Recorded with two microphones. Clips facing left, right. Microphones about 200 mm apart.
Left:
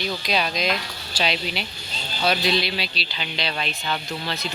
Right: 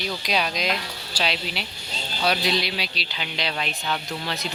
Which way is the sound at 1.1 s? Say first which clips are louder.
Left 2 dB; 5° right (ahead or behind).